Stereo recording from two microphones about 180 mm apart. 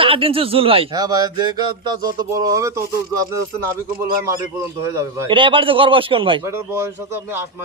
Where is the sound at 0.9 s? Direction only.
20° right (ahead or behind).